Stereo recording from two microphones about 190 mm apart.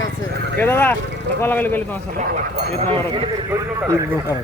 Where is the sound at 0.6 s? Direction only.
10° left (ahead or behind).